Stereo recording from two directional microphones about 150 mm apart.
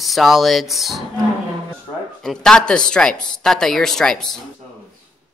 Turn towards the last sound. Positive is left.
turn(degrees=5)  # may be behind; listen again after turning